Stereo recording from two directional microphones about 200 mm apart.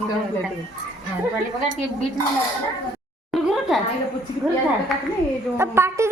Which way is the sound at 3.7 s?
Centre (ahead or behind).